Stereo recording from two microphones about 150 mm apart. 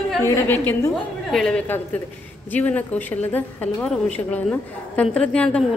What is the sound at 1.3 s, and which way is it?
A woman's voice, 5° left (ahead or behind).